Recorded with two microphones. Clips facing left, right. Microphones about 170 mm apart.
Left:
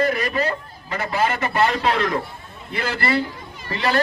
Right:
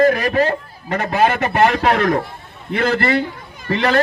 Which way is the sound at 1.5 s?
55° right (ahead or behind).